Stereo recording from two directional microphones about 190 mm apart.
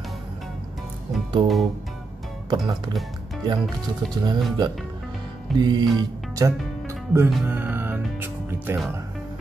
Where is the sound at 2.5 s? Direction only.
25° right (ahead or behind).